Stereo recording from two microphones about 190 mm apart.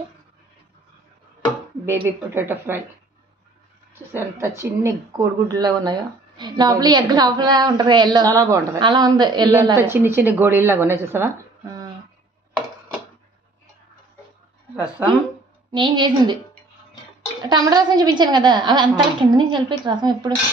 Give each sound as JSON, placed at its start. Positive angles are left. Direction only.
{"t": 1.9, "sound": "speech", "side_deg": -10}
{"t": 4.1, "sound": "a woman's voice", "side_deg": -15}
{"t": 15.7, "sound": "a woman's voice", "side_deg": -25}
{"t": 17.4, "sound": "a woman's voice", "side_deg": -20}